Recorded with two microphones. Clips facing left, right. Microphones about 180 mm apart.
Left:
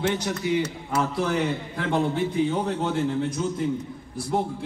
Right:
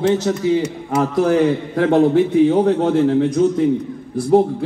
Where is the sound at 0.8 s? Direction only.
50° right (ahead or behind); by 3.6 s 80° right.